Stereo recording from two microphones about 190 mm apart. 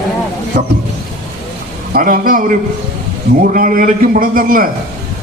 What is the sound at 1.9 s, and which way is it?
A man's voice, 45° right (ahead or behind).